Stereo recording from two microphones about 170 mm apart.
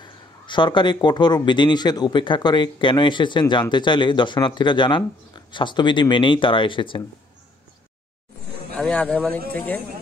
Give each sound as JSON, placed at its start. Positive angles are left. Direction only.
{"t": 0.0, "sound": "a man's voice", "side_deg": 25}
{"t": 8.7, "sound": "a man's voice", "side_deg": 5}